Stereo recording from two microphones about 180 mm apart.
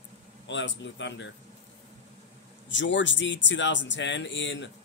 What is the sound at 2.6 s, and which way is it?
Speech, 90° left.